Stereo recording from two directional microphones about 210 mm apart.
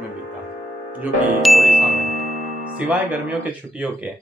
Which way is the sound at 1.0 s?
Centre (ahead or behind).